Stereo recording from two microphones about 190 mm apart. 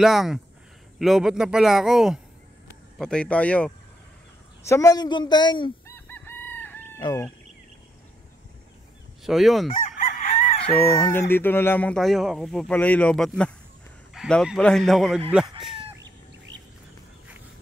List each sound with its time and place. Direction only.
0.0 s speech: centre (ahead or behind)
4.6 s speech: 15° left (ahead or behind)
5.9 s chicken: 10° left (ahead or behind)
7.0 s fowl: 20° left (ahead or behind)
9.2 s fowl: centre (ahead or behind)
9.8 s chicken: 40° left (ahead or behind)
10.6 s fowl: 10° left (ahead or behind)
14.1 s speech: centre (ahead or behind)